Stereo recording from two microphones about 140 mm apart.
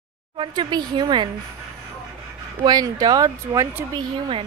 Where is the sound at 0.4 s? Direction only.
30° right (ahead or behind).